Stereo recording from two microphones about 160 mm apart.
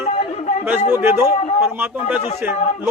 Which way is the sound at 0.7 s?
15° right (ahead or behind).